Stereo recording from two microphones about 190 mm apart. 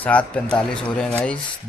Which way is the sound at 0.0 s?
5° left (ahead or behind).